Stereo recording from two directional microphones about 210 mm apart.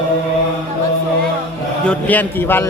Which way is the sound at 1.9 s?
10° left (ahead or behind).